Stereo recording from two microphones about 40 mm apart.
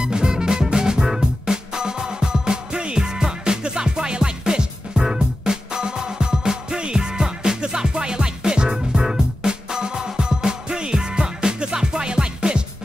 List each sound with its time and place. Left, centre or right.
0.0 s music: centre